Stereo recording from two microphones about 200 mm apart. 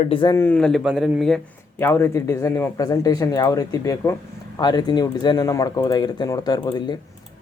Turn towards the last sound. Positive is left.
turn(degrees=20)  # may be behind; listen again after turning